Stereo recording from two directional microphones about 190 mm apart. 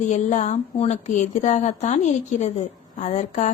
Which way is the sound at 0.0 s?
40° left (ahead or behind).